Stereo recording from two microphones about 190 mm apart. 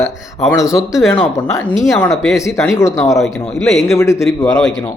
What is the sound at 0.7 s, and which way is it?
Speech, centre (ahead or behind).